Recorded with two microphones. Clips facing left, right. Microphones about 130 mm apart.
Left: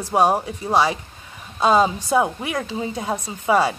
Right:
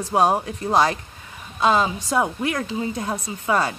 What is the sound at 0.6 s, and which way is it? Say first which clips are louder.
Speech: even; 5° left (ahead or behind).